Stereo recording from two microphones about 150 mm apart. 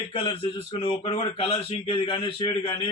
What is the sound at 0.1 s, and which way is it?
A man's voice, 35° left (ahead or behind).